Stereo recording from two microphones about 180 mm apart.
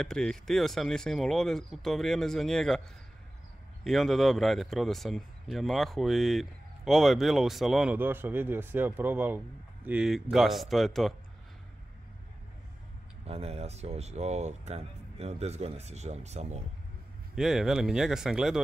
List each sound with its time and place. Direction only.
0.0 s speech: 5° left (ahead or behind)
3.8 s speech: centre (ahead or behind)
13.2 s speech: 35° right (ahead or behind)
17.4 s speech: centre (ahead or behind)